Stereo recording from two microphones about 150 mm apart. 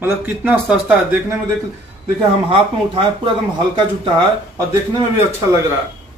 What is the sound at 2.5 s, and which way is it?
Speech, 35° right (ahead or behind).